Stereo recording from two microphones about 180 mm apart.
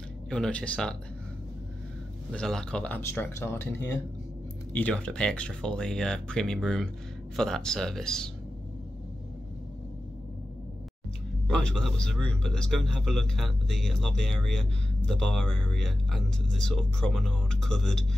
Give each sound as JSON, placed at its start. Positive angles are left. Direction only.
{"t": 0.3, "sound": "speech", "side_deg": 5}
{"t": 2.3, "sound": "speech", "side_deg": 5}
{"t": 11.4, "sound": "speech", "side_deg": 5}